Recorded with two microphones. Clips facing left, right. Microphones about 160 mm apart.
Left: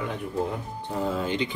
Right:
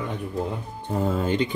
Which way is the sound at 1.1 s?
45° right (ahead or behind).